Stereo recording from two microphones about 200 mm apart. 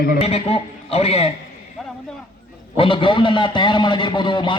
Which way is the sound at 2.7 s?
25° left (ahead or behind).